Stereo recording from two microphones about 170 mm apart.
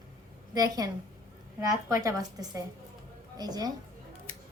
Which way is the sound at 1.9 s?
20° right (ahead or behind).